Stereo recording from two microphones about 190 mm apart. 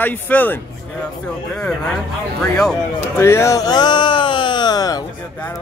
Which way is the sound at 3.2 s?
15° left (ahead or behind).